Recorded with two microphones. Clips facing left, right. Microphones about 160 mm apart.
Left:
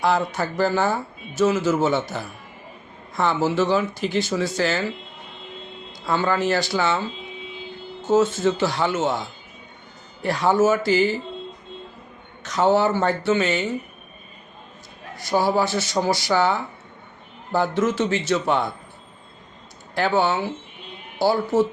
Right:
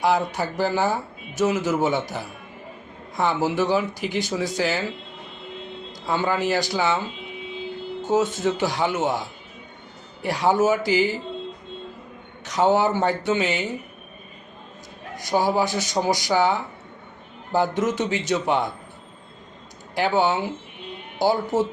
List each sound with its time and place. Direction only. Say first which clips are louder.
0.0 s speech: even; 15° right (ahead or behind)
6.1 s speech: left 1 dB; 15° right (ahead or behind)
8.0 s speech: left 3 dB; 15° right (ahead or behind)
12.4 s speech: left 1 dB; 15° right (ahead or behind)
15.1 s speech: left 1 dB; 15° right (ahead or behind)
20.0 s speech: even; 15° right (ahead or behind)